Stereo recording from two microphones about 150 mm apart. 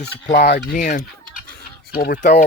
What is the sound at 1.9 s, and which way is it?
Speech, 70° left (ahead or behind).